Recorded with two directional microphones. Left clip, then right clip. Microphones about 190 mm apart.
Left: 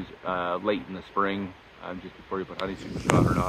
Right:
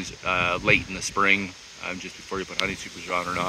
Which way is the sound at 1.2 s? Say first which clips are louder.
Right 6 dB; 30° right (ahead or behind).